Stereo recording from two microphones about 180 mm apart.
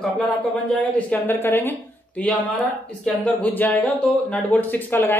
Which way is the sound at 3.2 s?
10° left (ahead or behind).